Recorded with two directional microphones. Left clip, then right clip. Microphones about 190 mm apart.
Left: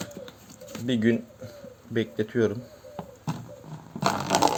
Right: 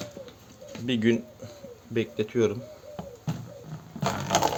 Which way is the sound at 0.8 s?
10° left (ahead or behind).